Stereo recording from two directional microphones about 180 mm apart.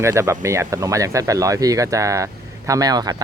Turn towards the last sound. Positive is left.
turn(degrees=-20)  # may be behind; listen again after turning